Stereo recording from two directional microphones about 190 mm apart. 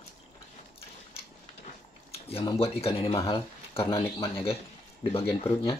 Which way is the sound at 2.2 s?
30° left (ahead or behind).